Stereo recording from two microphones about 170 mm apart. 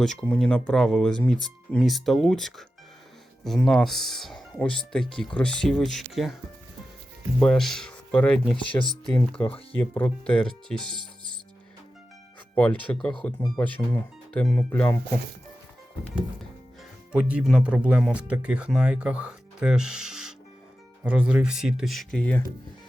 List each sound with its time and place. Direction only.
0.0 s speech: 5° left (ahead or behind)
7.3 s speech: 5° left (ahead or behind)
8.8 s speech: 30° left (ahead or behind)
9.4 s speech: 10° left (ahead or behind)
12.5 s speech: 5° left (ahead or behind)
14.5 s speech: 15° left (ahead or behind)
17.1 s speech: 5° right (ahead or behind)